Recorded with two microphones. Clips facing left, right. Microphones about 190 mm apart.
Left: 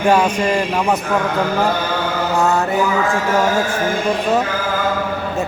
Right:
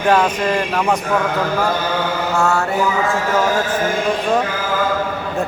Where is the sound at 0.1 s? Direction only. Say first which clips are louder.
Even; 10° left (ahead or behind).